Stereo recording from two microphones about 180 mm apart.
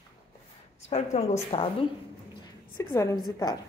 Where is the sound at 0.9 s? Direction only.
35° left (ahead or behind).